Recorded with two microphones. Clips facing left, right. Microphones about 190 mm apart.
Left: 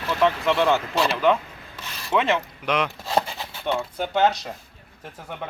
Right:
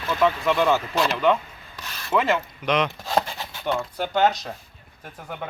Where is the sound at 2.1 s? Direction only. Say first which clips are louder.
Even; centre (ahead or behind).